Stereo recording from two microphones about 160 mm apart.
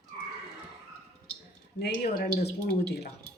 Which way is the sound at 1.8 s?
80° left.